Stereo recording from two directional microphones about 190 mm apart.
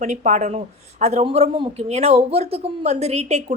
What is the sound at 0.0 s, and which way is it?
Speech, 40° right (ahead or behind).